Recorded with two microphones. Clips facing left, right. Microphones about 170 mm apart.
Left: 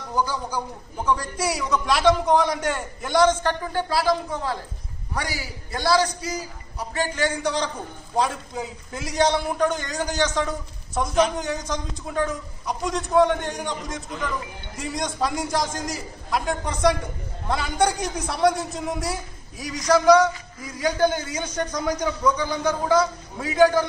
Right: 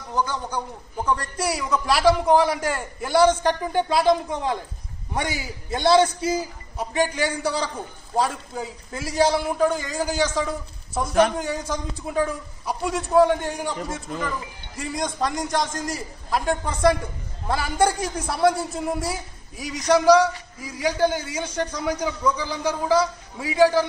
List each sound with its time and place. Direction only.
0.1 s a man's voice: 5° left (ahead or behind)